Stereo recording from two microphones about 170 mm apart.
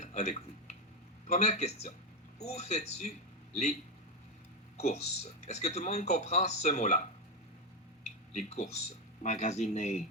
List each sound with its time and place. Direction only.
0.0 s a sound: 45° left (ahead or behind)
1.3 s speech: 40° left (ahead or behind)
4.8 s speech: 40° left (ahead or behind)
8.3 s speech: 45° left (ahead or behind)